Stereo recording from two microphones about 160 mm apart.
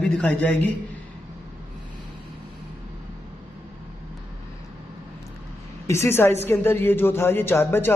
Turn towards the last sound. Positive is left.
turn(degrees=15)  # may be behind; listen again after turning